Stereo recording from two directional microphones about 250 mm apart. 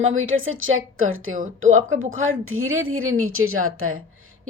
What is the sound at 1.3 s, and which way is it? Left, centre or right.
Speech, right.